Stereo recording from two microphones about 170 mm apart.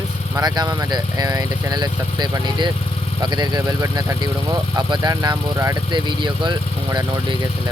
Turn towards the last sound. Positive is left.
turn(degrees=-25)  # may be behind; listen again after turning